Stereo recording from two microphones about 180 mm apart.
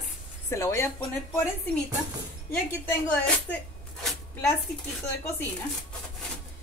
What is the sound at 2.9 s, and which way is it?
Speech, 10° left (ahead or behind).